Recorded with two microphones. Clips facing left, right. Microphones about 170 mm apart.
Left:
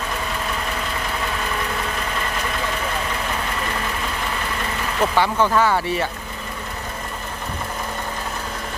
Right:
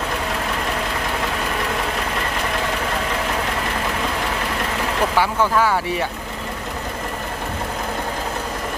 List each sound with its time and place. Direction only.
5.1 s speech: 10° right (ahead or behind)